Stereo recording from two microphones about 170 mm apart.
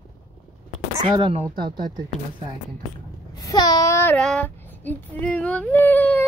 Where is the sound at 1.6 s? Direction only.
60° right (ahead or behind).